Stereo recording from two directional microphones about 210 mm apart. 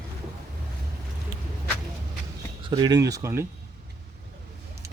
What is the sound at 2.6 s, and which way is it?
Speech, 20° right (ahead or behind).